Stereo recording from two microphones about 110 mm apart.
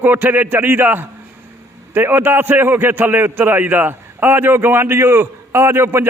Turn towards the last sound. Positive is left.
turn(degrees=-20)  # may be behind; listen again after turning